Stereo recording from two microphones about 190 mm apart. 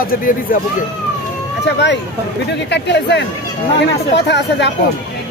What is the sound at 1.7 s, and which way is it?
Speech, 65° left (ahead or behind).